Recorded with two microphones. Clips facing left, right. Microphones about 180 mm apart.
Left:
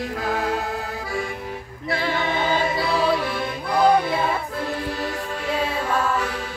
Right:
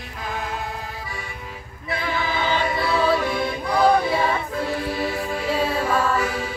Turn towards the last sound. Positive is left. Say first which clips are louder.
# right 2 dB
turn(degrees=-10)  # may be behind; listen again after turning